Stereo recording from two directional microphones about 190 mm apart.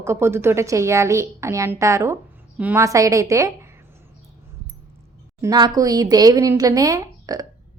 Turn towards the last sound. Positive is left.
turn(degrees=-20)  # may be behind; listen again after turning